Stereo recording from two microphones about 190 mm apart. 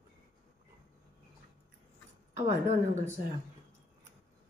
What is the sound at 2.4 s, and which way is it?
Speech, 35° right (ahead or behind).